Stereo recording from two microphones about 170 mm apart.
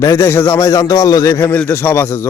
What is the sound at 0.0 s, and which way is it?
A man's voice, 20° left (ahead or behind).